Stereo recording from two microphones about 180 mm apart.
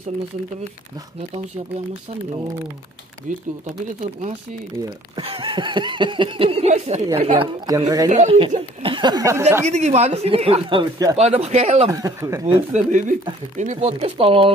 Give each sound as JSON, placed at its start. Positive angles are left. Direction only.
{"t": 3.6, "sound": "speech", "side_deg": -35}
{"t": 7.6, "sound": "speech", "side_deg": -20}
{"t": 8.1, "sound": "speech", "side_deg": -35}
{"t": 9.7, "sound": "speech", "side_deg": -40}
{"t": 11.1, "sound": "speech", "side_deg": -35}
{"t": 11.9, "sound": "speech", "side_deg": -15}
{"t": 12.7, "sound": "speech", "side_deg": -45}